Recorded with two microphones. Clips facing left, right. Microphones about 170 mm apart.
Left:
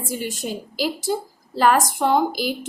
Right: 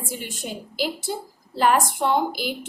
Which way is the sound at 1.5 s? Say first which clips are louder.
Left 2 dB; 40° left (ahead or behind).